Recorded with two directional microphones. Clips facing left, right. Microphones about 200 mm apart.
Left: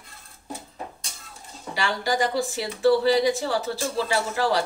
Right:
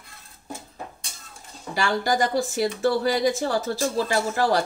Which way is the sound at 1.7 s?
45° right (ahead or behind).